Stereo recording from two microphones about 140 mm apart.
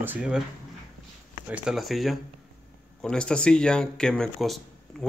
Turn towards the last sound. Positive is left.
turn(degrees=0)  # may be behind; listen again after turning